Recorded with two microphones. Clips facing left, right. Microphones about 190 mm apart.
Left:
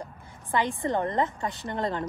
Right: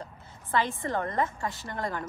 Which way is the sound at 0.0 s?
15° left (ahead or behind).